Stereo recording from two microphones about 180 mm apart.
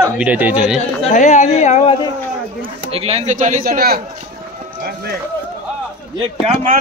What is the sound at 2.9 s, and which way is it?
Speech, 35° right (ahead or behind).